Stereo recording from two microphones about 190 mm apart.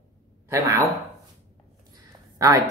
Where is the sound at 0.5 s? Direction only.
15° right (ahead or behind).